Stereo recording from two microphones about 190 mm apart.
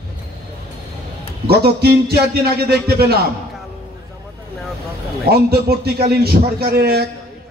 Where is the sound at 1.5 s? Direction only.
55° right (ahead or behind).